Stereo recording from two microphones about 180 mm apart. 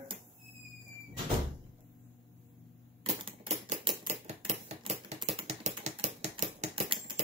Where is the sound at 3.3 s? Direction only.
30° right (ahead or behind).